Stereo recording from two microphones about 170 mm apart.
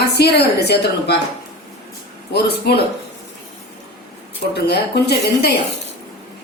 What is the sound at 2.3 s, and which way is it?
Speech, 75° left (ahead or behind).